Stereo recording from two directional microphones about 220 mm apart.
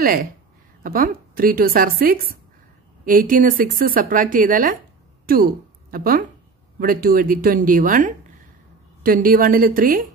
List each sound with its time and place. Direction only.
0.0 s speech: 40° right (ahead or behind)